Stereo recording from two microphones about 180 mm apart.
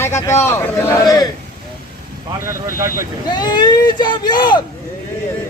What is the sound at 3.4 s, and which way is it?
Speech, 25° left (ahead or behind).